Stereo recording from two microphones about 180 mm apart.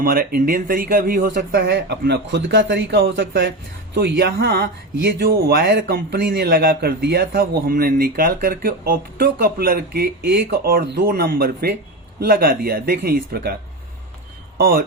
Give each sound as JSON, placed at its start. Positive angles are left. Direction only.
{"t": 0.0, "sound": "speech", "side_deg": -55}